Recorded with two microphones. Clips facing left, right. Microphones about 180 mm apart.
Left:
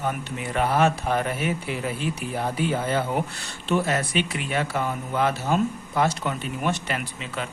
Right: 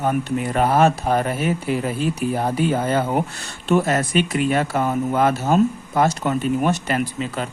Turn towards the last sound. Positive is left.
turn(degrees=-40)  # may be behind; listen again after turning